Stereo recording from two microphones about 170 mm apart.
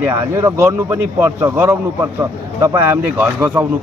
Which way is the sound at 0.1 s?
15° right (ahead or behind).